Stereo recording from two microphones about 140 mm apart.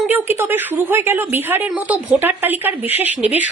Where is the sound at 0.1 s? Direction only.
15° right (ahead or behind).